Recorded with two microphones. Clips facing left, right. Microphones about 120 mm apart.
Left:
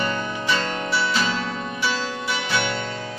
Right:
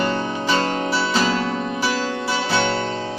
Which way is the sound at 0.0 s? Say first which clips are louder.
Right 4 dB; 35° right (ahead or behind).